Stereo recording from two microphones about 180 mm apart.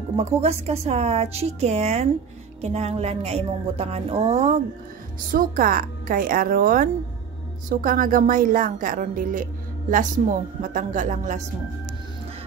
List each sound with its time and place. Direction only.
0.1 s a woman's voice: 35° right (ahead or behind)
5.3 s a woman's voice: 50° right (ahead or behind)